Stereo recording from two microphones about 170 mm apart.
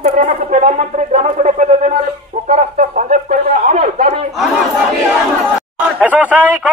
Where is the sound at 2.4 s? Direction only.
45° right (ahead or behind).